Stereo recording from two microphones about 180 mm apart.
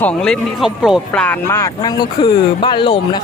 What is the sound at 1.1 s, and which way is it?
Speech, 10° left (ahead or behind).